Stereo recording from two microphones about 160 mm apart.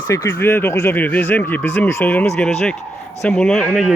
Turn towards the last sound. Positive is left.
turn(degrees=0)  # may be behind; listen again after turning